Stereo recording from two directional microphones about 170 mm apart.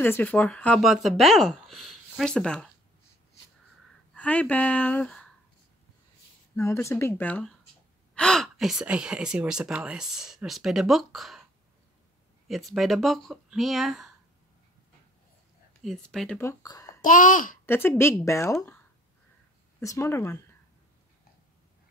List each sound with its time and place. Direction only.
0.0 s speech: 10° left (ahead or behind)
4.1 s speech: 10° left (ahead or behind)
6.5 s speech: 15° left (ahead or behind); by 11.4 s centre (ahead or behind)
12.4 s speech: centre (ahead or behind)
15.8 s speech: centre (ahead or behind)
16.3 s speech: 20° left (ahead or behind)
17.0 s a child's voice: 50° left (ahead or behind)
17.6 s speech: 15° left (ahead or behind)
19.8 s speech: 20° left (ahead or behind)